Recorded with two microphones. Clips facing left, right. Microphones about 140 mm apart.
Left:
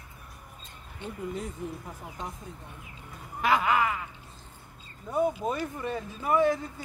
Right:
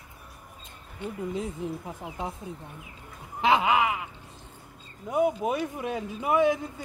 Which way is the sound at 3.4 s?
20° right (ahead or behind).